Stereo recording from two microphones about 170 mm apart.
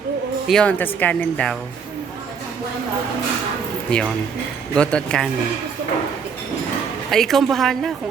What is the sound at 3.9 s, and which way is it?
A woman's voice, 5° left (ahead or behind).